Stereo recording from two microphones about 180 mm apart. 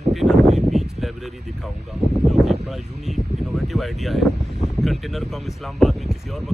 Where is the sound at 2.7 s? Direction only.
Centre (ahead or behind).